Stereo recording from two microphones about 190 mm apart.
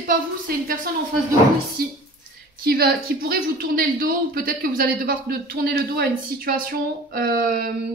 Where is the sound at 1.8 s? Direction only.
50° right (ahead or behind).